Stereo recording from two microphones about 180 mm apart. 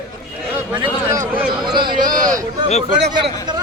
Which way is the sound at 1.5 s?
25° right (ahead or behind).